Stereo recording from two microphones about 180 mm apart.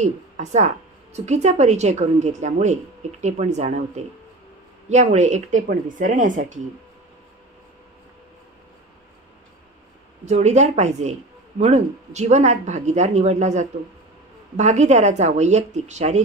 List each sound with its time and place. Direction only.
0.0 s a woman's voice: 40° right (ahead or behind)
10.2 s speech: 40° right (ahead or behind)